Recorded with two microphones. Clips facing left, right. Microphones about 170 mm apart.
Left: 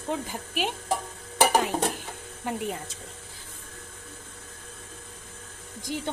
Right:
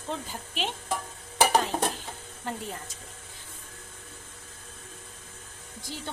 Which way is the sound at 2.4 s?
10° left (ahead or behind).